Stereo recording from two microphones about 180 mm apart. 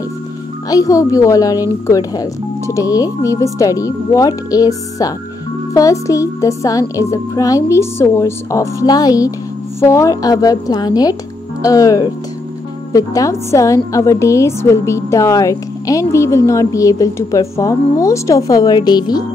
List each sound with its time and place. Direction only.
0.7 s a woman's voice: 20° left (ahead or behind)